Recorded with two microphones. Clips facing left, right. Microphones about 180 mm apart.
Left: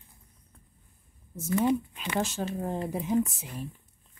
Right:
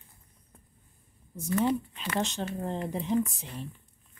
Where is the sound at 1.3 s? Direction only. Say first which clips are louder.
Left 1 dB; 5° left (ahead or behind).